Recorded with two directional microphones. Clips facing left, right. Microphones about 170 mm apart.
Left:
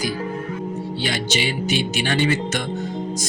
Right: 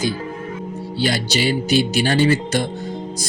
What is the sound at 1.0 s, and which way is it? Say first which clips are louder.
Speech: right 5 dB; 35° right (ahead or behind).